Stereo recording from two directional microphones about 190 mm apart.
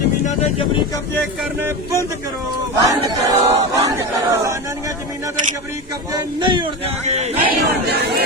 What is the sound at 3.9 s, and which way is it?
Crowd, 15° right (ahead or behind).